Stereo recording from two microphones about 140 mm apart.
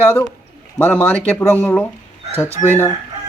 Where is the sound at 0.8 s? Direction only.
10° left (ahead or behind).